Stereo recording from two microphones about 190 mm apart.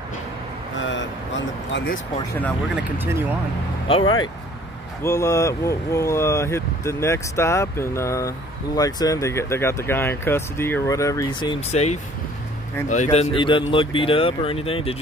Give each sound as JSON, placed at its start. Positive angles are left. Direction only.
{"t": 0.7, "sound": "speech", "side_deg": 75}
{"t": 2.7, "sound": "speech", "side_deg": -10}
{"t": 3.8, "sound": "speech", "side_deg": 25}
{"t": 11.7, "sound": "speech", "side_deg": 35}